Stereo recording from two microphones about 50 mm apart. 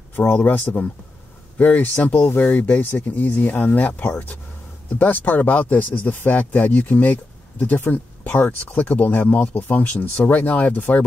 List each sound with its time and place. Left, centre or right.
0.4 s speech: left